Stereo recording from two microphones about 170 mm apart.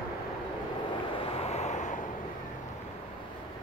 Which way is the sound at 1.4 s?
40° left (ahead or behind).